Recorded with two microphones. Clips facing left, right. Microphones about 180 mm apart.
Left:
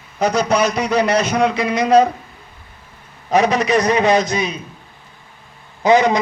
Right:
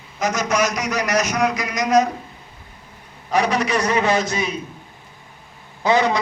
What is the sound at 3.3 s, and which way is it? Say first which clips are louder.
A man's voice: left 4 dB; 20° left (ahead or behind).